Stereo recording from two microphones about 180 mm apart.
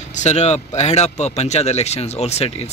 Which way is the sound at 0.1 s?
40° left (ahead or behind).